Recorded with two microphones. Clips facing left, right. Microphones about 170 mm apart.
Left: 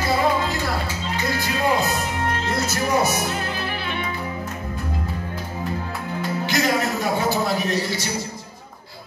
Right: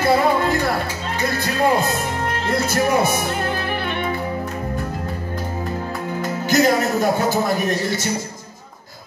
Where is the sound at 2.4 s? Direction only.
55° right (ahead or behind).